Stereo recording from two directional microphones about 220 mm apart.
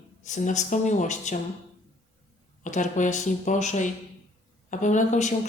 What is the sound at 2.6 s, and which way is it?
A woman's voice, 35° left (ahead or behind).